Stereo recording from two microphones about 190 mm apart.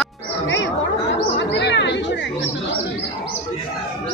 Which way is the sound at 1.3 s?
65° left (ahead or behind).